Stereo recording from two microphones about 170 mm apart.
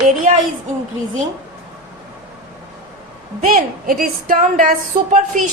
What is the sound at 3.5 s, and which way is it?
A woman's voice, 55° right (ahead or behind).